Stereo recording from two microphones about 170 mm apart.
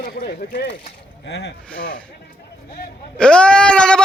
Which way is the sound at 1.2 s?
90° left.